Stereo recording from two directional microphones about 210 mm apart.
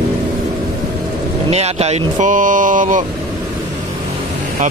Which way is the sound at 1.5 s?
30° right (ahead or behind).